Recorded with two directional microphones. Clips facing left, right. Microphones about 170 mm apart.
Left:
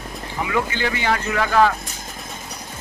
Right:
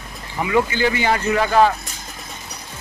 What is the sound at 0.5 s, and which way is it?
Speech, 5° right (ahead or behind).